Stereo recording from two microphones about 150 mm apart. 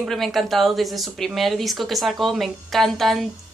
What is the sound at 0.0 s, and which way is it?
Speech, centre (ahead or behind).